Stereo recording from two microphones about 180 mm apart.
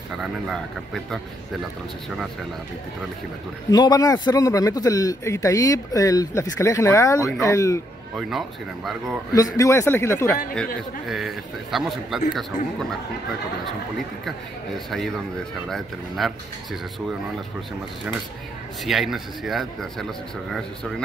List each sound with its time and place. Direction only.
0.2 s speech: centre (ahead or behind)
3.7 s a man's voice: 20° left (ahead or behind)
8.2 s speech: centre (ahead or behind)
9.3 s a man's voice: 20° left (ahead or behind)
11.1 s speech: centre (ahead or behind)
15.7 s speech: centre (ahead or behind)
18.9 s speech: centre (ahead or behind)